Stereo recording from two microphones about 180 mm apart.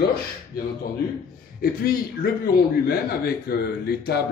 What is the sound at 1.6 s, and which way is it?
A man's voice, 55° left (ahead or behind).